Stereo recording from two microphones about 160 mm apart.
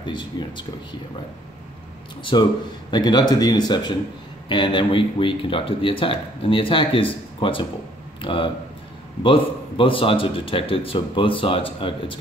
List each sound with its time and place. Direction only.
0.0 s speech: 30° left (ahead or behind)
2.3 s speech: 30° left (ahead or behind)